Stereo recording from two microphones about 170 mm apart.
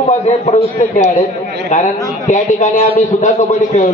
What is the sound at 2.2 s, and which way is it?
A man's voice, 45° left (ahead or behind).